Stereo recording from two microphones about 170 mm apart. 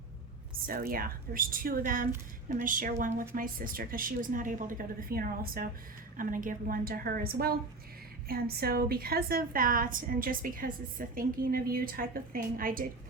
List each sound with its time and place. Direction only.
0.7 s a woman's voice: 60° right (ahead or behind)